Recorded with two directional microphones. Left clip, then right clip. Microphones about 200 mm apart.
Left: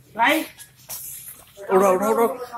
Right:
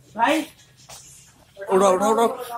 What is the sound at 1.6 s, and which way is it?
Speech, centre (ahead or behind).